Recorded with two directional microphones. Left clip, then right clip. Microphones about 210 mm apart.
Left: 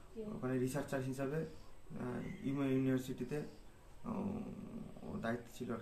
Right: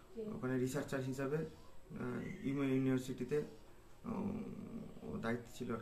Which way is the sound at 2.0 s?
5° left (ahead or behind).